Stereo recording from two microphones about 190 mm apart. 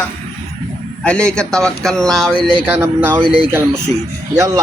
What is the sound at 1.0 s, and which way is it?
A man's voice, 5° left (ahead or behind).